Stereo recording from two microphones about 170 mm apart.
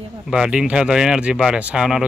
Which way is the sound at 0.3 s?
5° right (ahead or behind).